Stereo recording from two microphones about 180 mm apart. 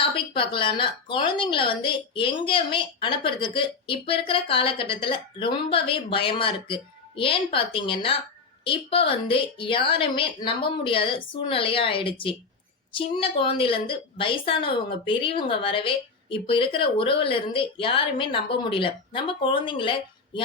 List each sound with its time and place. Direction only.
0.0 s a woman's voice: 30° left (ahead or behind)